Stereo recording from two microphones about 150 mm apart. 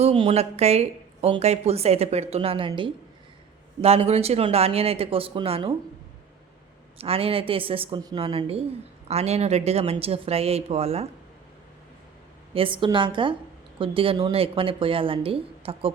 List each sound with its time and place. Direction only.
0.0 s a woman's voice: 40° right (ahead or behind)
7.0 s a woman's voice: 40° right (ahead or behind)
12.5 s speech: 35° right (ahead or behind)